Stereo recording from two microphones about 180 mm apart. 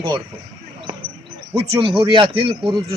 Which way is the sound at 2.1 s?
30° right (ahead or behind).